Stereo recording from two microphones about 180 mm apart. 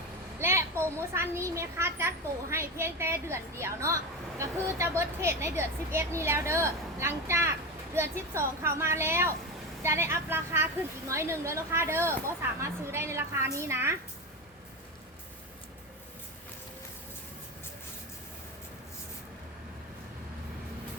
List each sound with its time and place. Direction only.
0.3 s a woman's voice: 15° right (ahead or behind)